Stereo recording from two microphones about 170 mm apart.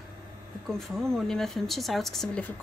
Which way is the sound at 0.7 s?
Centre (ahead or behind).